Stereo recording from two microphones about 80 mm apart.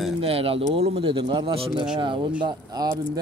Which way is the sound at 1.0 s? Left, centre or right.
Right.